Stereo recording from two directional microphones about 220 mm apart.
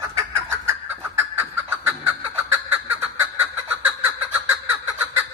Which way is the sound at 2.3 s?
10° right (ahead or behind).